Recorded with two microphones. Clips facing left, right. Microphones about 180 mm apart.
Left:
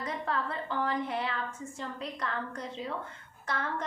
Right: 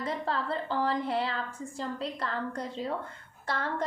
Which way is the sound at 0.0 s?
30° right (ahead or behind).